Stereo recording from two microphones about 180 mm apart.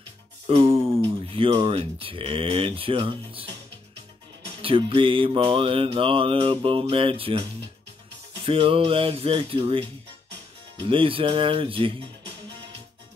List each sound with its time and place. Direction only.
0.5 s a sound: 30° right (ahead or behind)
1.3 s speech: 30° right (ahead or behind)
4.6 s mantra: 30° right (ahead or behind)
8.5 s speech: 30° right (ahead or behind)
10.8 s mantra: 30° right (ahead or behind)